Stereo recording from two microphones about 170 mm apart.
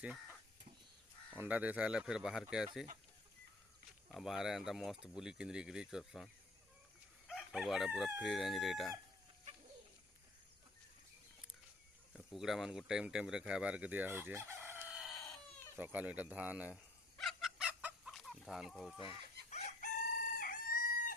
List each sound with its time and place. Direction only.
0.0 s speech: 5° right (ahead or behind)
1.4 s speech: 10° right (ahead or behind)
4.1 s speech: centre (ahead or behind)
12.1 s speech: centre (ahead or behind)
17.2 s chicken: centre (ahead or behind)
19.5 s chicken: 45° left (ahead or behind)